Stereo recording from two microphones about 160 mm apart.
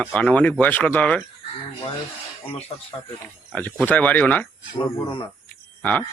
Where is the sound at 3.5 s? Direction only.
10° left (ahead or behind).